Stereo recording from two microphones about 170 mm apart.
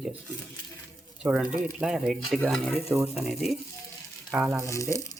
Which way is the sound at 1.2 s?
10° right (ahead or behind).